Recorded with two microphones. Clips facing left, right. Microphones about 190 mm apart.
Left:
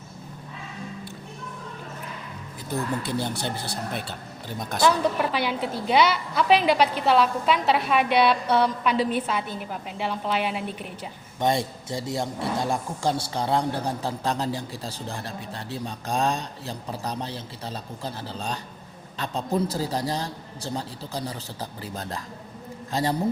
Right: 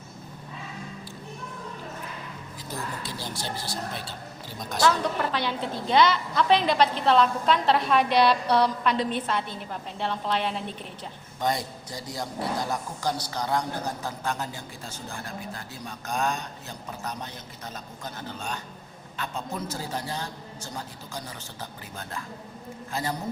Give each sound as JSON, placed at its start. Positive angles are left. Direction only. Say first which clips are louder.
{"t": 3.0, "sound": "speech", "louder": "left 7 dB", "side_deg": 60}
{"t": 4.5, "sound": "speech", "louder": "left 4 dB", "side_deg": 55}
{"t": 4.8, "sound": "a woman's voice", "louder": "left 2 dB", "side_deg": 10}
{"t": 11.3, "sound": "a man's voice", "louder": "left 4 dB", "side_deg": 25}